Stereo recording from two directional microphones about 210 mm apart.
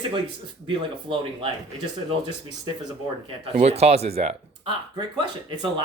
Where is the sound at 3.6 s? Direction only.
30° right (ahead or behind).